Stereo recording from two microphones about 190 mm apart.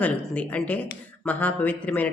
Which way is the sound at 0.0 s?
5° left (ahead or behind).